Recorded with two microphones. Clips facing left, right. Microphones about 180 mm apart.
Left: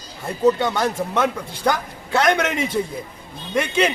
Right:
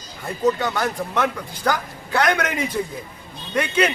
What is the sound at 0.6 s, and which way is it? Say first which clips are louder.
A woman's voice: left 2 dB; 20° left (ahead or behind).